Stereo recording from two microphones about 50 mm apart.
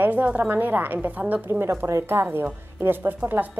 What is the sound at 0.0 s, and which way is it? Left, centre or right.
A woman's voice, right.